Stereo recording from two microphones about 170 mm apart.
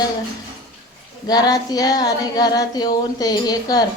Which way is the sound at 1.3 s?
20° left (ahead or behind).